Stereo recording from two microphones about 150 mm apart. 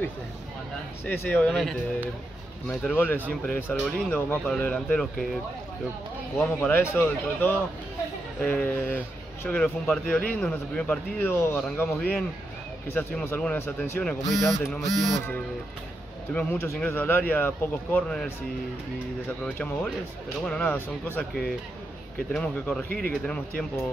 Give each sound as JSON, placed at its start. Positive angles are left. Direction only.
{"t": 1.0, "sound": "speech", "side_deg": 10}
{"t": 2.9, "sound": "speech", "side_deg": 15}
{"t": 6.3, "sound": "speech", "side_deg": 15}
{"t": 14.4, "sound": "a sound", "side_deg": 5}
{"t": 14.8, "sound": "speech", "side_deg": 20}